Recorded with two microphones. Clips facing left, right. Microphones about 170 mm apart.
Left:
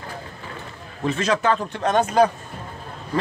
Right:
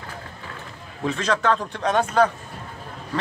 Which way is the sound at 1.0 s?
5° left (ahead or behind).